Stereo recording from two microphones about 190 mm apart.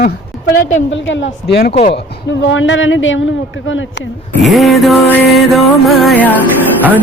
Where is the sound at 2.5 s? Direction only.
85° left.